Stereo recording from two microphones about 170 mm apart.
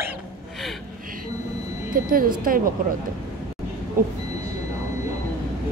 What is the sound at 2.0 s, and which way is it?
Speech, 55° right (ahead or behind).